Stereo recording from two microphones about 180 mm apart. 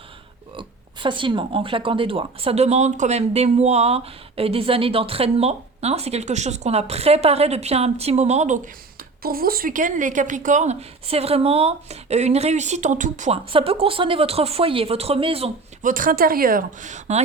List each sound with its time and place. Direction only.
1.0 s speech: 25° right (ahead or behind)
9.2 s speech: 55° right (ahead or behind); by 15.5 s 30° right (ahead or behind)
15.8 s speech: 50° right (ahead or behind)